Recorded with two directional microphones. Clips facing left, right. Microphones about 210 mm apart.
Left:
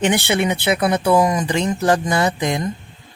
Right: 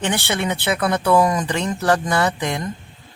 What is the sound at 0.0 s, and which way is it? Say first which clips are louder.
Speech: left 4 dB; 15° left (ahead or behind).